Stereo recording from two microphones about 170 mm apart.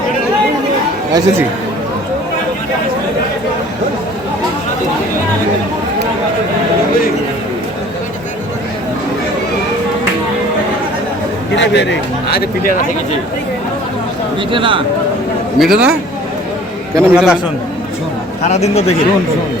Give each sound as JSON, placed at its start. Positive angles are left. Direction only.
{"t": 11.5, "sound": "speech", "side_deg": 90}
{"t": 14.5, "sound": "speech", "side_deg": -30}
{"t": 15.5, "sound": "speech", "side_deg": 0}
{"t": 17.0, "sound": "a man's voice", "side_deg": -10}
{"t": 18.4, "sound": "speech", "side_deg": 40}